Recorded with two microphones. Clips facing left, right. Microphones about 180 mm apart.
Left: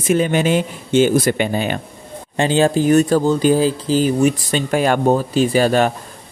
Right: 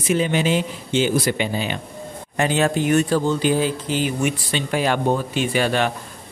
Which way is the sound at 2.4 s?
30° left (ahead or behind).